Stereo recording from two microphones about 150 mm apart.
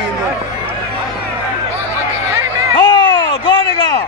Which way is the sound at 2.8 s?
35° left (ahead or behind).